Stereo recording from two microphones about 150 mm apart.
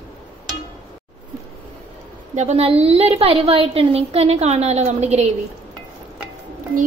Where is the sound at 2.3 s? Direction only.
45° right (ahead or behind).